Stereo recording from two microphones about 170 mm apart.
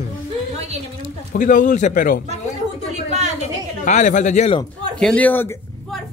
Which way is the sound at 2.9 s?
45° right (ahead or behind).